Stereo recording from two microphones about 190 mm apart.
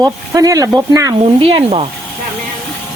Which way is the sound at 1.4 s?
30° right (ahead or behind).